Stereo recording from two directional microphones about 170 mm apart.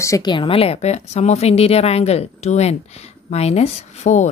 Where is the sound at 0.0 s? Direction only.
20° left (ahead or behind).